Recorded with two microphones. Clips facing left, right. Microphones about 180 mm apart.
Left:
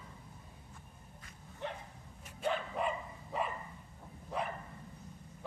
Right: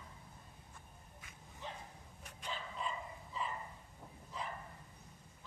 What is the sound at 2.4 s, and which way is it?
Dog, 60° left (ahead or behind).